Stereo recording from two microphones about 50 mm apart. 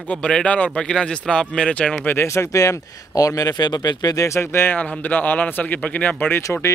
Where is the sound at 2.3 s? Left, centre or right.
Left.